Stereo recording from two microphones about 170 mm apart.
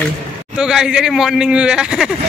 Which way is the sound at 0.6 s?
5° right (ahead or behind).